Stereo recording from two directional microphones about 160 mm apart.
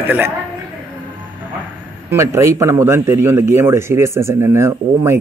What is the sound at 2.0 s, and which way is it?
A man's voice, 15° right (ahead or behind).